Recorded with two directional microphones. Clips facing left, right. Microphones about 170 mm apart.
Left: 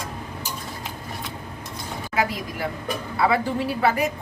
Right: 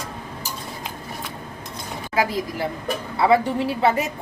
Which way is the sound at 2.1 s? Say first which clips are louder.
Right 3 dB; 30° right (ahead or behind).